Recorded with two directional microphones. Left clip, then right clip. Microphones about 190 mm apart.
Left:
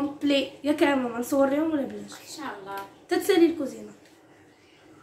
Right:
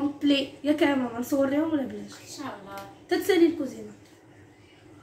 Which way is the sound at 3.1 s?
10° left (ahead or behind).